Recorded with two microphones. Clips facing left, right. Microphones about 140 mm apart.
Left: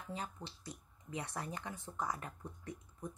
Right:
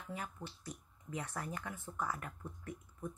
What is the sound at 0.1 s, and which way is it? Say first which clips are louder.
Speech: even; 25° left (ahead or behind).